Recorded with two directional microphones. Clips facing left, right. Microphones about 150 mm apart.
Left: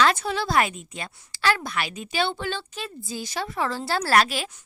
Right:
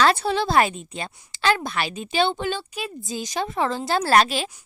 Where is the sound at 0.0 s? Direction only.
30° right (ahead or behind).